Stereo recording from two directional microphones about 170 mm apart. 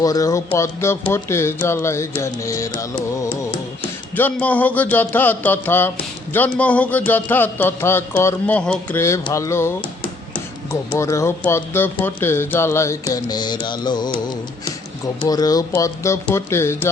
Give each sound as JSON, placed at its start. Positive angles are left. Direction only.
{"t": 0.0, "sound": "speech", "side_deg": 20}
{"t": 4.1, "sound": "speech", "side_deg": 10}